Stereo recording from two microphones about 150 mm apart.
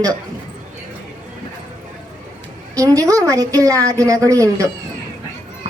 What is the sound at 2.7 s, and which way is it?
A woman's voice, 20° right (ahead or behind).